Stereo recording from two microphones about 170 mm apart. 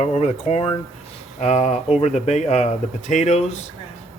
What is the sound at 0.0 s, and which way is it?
Speech, 40° left (ahead or behind).